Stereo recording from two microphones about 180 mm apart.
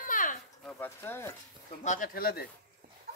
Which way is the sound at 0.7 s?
10° left (ahead or behind).